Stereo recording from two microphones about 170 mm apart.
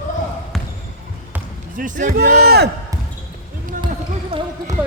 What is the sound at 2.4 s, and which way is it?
Speech, 70° right (ahead or behind).